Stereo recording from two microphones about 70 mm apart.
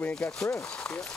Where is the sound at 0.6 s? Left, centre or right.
Centre.